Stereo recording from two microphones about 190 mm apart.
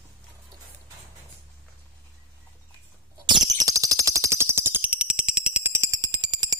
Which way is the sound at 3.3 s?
20° right (ahead or behind).